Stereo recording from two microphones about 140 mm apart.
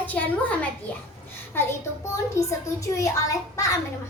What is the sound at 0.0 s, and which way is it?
Speech, 10° left (ahead or behind).